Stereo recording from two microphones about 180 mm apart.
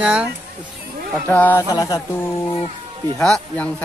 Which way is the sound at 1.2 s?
10° left (ahead or behind).